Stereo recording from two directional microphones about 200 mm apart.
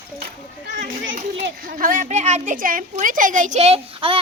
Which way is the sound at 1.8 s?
40° right (ahead or behind).